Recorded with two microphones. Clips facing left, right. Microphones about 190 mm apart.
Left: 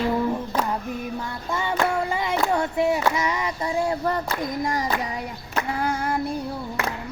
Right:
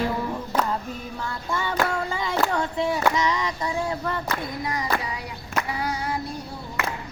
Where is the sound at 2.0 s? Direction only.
20° left (ahead or behind).